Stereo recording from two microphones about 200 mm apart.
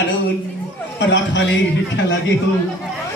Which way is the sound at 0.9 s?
60° left (ahead or behind).